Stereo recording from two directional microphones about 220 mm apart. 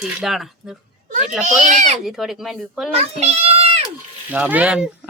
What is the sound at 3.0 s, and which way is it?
Speech, 30° right (ahead or behind).